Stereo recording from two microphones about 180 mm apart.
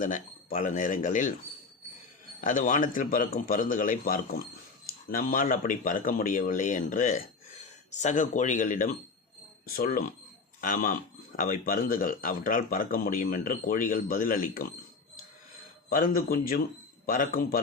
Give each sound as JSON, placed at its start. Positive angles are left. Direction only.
{"t": 0.0, "sound": "a man's voice", "side_deg": 45}
{"t": 2.4, "sound": "a man's voice", "side_deg": 45}
{"t": 15.9, "sound": "a man's voice", "side_deg": 50}